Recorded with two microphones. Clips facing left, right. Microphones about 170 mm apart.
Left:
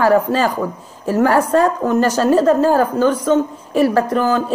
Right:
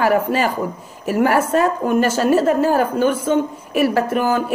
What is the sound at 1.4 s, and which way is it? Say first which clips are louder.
A woman's voice: left 2 dB; 15° right (ahead or behind).